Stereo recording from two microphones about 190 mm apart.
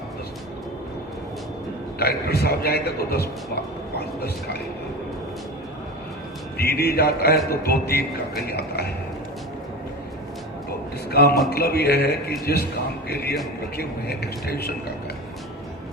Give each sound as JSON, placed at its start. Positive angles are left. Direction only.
{"t": 2.0, "sound": "a man's voice", "side_deg": 55}
{"t": 6.6, "sound": "a man's voice", "side_deg": 55}
{"t": 11.1, "sound": "a man's voice", "side_deg": 55}